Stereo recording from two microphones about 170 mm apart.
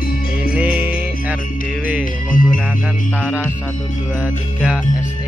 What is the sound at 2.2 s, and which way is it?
Music, 50° left (ahead or behind).